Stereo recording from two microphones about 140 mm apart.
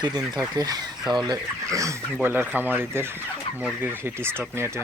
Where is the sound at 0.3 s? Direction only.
25° right (ahead or behind).